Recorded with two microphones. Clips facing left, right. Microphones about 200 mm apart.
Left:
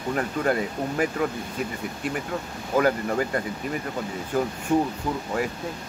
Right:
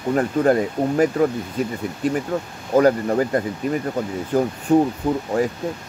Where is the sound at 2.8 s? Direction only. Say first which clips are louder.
Right 6 dB; 35° right (ahead or behind).